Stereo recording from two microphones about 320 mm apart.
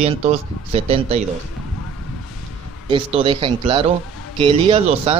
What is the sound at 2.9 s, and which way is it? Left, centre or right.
A man's voice, centre.